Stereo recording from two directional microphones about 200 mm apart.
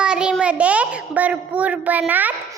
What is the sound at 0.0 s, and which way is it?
A child's voice, 5° right (ahead or behind).